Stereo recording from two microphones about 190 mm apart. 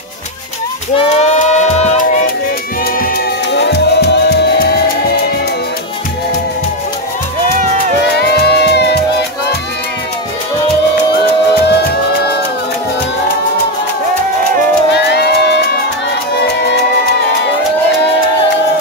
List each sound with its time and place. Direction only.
0.9 s singing: 35° left (ahead or behind)
3.5 s music: 65° left (ahead or behind)
8.2 s music: 60° left (ahead or behind)
11.6 s music: 60° left (ahead or behind)
15.0 s music: 60° left (ahead or behind)